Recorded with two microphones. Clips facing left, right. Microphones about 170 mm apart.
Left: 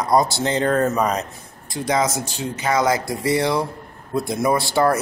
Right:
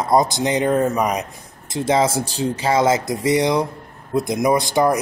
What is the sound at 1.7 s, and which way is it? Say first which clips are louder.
Speech: right 3 dB; 25° right (ahead or behind).